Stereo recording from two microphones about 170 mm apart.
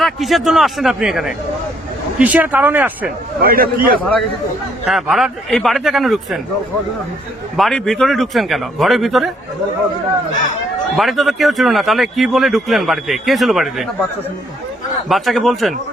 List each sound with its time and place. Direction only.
0.0 s speech: centre (ahead or behind)
3.4 s a man's voice: 60° right (ahead or behind)
4.9 s speech: centre (ahead or behind)
7.5 s speech: centre (ahead or behind)
10.9 s speech: centre (ahead or behind)
15.1 s speech: centre (ahead or behind)